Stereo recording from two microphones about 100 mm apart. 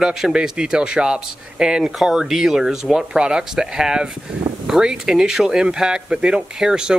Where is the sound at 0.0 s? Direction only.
5° right (ahead or behind).